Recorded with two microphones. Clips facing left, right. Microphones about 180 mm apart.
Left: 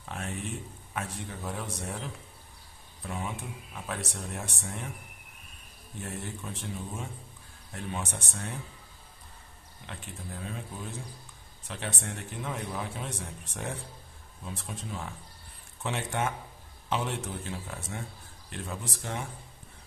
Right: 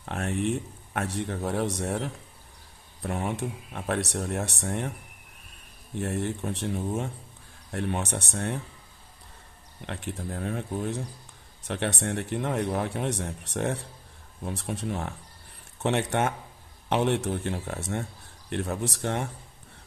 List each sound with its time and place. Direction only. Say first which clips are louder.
0.0 s a man's voice: right 9 dB; 65° right (ahead or behind)
5.9 s speech: right 9 dB; 65° right (ahead or behind)
9.8 s speech: right 8 dB; 65° right (ahead or behind)